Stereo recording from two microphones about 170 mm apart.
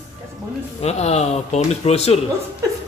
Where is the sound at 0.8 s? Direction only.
40° left (ahead or behind).